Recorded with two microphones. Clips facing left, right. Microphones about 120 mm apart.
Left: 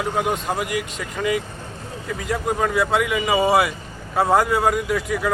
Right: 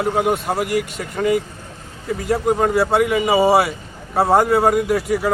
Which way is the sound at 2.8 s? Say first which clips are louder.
Right 4 dB; 45° right (ahead or behind).